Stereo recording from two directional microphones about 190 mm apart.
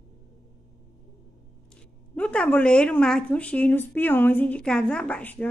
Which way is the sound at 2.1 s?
5° left (ahead or behind).